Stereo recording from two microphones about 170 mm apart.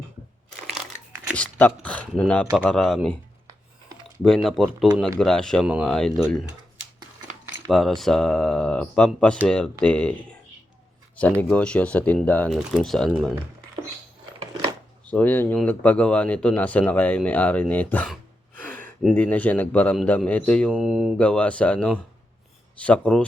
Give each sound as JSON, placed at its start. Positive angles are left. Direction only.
{"t": 1.4, "sound": "speech", "side_deg": 10}
{"t": 3.4, "sound": "a sound", "side_deg": -25}
{"t": 4.2, "sound": "speech", "side_deg": 0}
{"t": 7.7, "sound": "speech", "side_deg": 0}
{"t": 11.3, "sound": "speech", "side_deg": 5}
{"t": 15.0, "sound": "speech", "side_deg": 10}
{"t": 19.0, "sound": "speech", "side_deg": 10}
{"t": 20.7, "sound": "speech", "side_deg": -5}
{"t": 21.2, "sound": "speech", "side_deg": 5}